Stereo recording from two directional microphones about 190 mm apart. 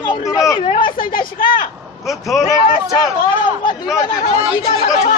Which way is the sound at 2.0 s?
Centre (ahead or behind).